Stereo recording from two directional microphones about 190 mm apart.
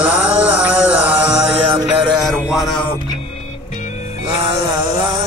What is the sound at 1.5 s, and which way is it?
Music, 30° right (ahead or behind).